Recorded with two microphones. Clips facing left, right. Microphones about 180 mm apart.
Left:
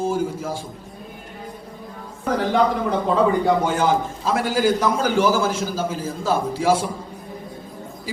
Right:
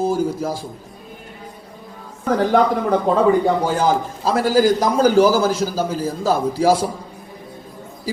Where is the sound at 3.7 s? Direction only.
35° right (ahead or behind).